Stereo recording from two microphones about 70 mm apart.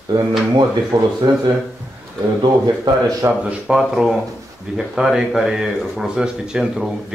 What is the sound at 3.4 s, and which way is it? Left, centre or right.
Speech, centre.